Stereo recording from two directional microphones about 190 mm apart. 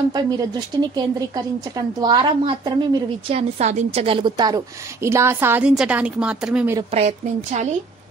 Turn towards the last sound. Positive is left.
turn(degrees=-35)  # may be behind; listen again after turning